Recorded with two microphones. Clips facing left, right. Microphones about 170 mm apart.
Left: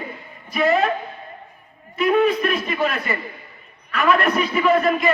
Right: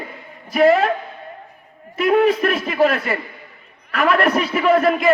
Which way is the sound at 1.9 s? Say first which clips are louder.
Right 2 dB; 90° right.